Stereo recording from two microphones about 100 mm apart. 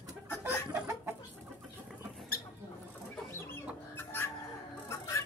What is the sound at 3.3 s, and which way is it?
Chicken, 25° left (ahead or behind).